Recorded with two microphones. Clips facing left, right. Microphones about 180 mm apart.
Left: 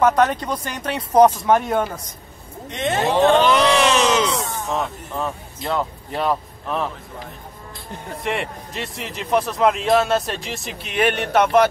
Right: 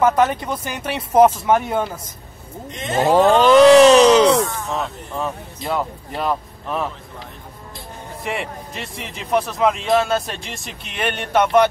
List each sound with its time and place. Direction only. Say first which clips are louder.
0.0 s speech: even; 5° right (ahead or behind)
3.0 s speech: right 3 dB; 40° right (ahead or behind)
4.2 s speech: right 8 dB; 65° right (ahead or behind)
4.6 s speech: left 1 dB; centre (ahead or behind)
8.2 s speech: left 1 dB; centre (ahead or behind)